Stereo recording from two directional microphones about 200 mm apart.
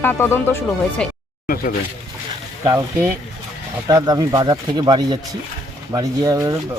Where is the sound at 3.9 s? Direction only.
20° right (ahead or behind).